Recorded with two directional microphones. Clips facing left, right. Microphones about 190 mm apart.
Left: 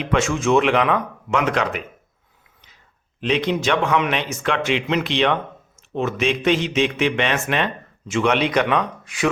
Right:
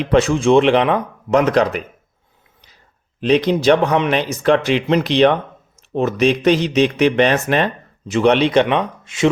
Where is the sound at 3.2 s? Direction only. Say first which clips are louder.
Right 7 dB; 35° right (ahead or behind).